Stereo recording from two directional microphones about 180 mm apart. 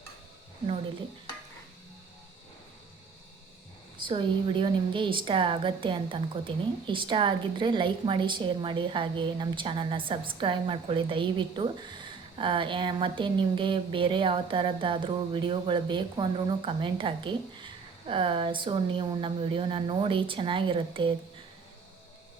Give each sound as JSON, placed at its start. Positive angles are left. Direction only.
{"t": 4.0, "sound": "a woman's voice", "side_deg": -25}